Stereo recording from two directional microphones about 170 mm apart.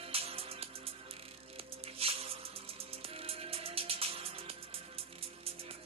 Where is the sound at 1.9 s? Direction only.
35° right (ahead or behind).